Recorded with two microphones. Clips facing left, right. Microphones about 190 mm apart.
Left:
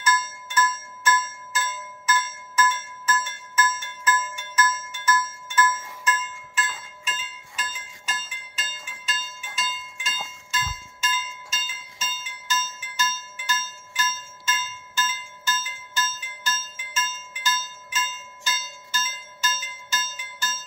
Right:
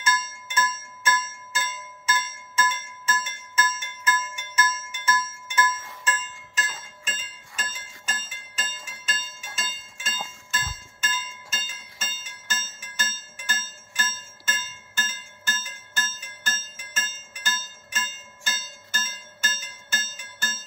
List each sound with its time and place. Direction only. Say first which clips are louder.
0.0 s music: left 3 dB; 25° right (ahead or behind)
6.0 s music: left 4 dB; 35° right (ahead or behind); by 20.6 s 55° right (ahead or behind)